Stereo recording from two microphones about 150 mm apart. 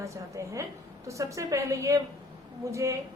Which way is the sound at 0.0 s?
20° right (ahead or behind).